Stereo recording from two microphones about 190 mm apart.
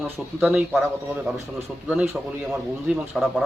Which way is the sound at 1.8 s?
5° right (ahead or behind).